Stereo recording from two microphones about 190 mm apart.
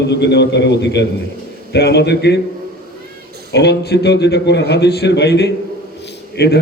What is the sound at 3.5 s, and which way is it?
A man's voice, 60° left (ahead or behind).